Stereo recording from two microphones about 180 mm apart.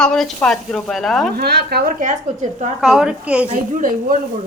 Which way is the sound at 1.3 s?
60° right (ahead or behind).